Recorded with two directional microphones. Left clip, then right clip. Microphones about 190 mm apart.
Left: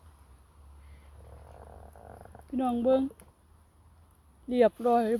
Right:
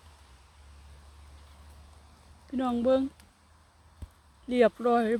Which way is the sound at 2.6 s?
Centre (ahead or behind).